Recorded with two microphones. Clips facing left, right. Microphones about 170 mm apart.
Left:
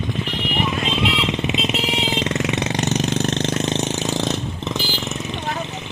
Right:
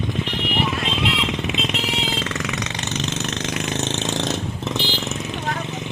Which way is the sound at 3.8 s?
10° left (ahead or behind).